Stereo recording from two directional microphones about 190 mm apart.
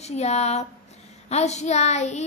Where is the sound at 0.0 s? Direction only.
35° left (ahead or behind).